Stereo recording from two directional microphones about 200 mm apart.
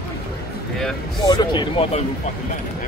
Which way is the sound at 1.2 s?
20° left (ahead or behind).